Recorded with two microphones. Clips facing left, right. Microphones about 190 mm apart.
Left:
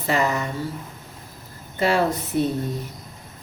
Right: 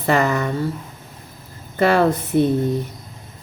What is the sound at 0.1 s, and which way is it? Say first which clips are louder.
Speech: right 4 dB; 55° right (ahead or behind).